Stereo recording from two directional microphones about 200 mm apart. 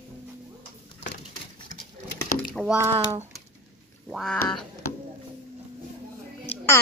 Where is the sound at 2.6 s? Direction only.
5° right (ahead or behind).